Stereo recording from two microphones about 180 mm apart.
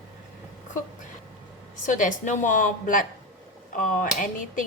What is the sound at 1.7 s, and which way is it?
Speech, 45° left (ahead or behind).